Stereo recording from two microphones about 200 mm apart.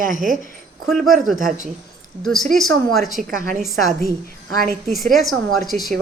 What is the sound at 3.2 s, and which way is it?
Speech, 45° right (ahead or behind).